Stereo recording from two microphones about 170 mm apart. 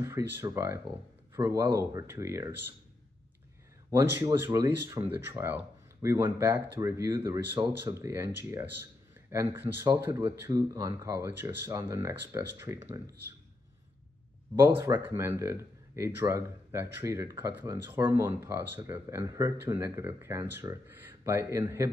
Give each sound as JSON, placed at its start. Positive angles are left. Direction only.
{"t": 0.0, "sound": "speech", "side_deg": -15}
{"t": 3.9, "sound": "speech", "side_deg": -15}
{"t": 14.5, "sound": "speech", "side_deg": -20}